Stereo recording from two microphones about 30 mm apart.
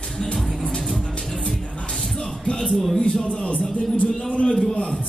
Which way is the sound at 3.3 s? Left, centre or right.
Left.